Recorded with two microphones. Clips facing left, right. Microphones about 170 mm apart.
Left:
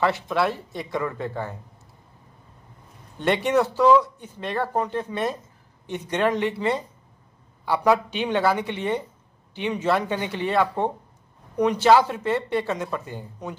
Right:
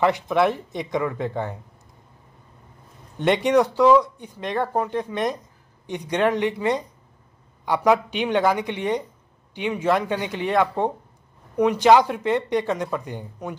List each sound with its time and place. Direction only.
0.0 s speech: 15° right (ahead or behind)
3.4 s speech: 15° right (ahead or behind)